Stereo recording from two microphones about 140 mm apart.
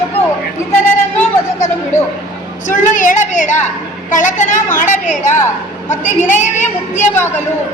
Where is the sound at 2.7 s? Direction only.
65° left (ahead or behind).